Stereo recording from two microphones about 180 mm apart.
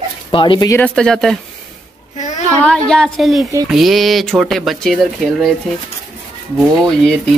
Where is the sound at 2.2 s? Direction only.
40° left (ahead or behind).